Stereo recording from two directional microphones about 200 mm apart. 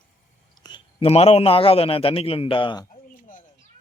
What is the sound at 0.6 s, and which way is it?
A man's voice, 25° left (ahead or behind).